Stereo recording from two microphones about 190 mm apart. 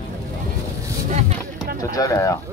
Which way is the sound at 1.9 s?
15° left (ahead or behind).